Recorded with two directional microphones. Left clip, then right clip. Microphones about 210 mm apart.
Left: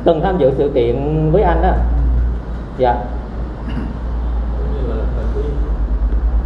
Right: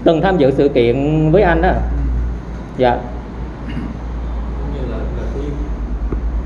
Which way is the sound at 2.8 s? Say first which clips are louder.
Right 1 dB; 40° right (ahead or behind).